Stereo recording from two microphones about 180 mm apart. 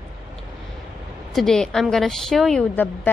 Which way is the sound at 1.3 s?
Centre (ahead or behind).